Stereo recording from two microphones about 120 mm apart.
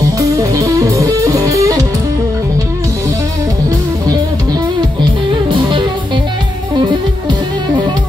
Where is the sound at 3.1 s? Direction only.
30° right (ahead or behind).